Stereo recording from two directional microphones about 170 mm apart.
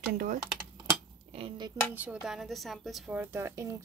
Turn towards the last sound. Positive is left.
turn(degrees=-15)  # may be behind; listen again after turning